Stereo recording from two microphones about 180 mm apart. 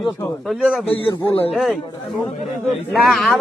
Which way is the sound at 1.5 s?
Centre (ahead or behind).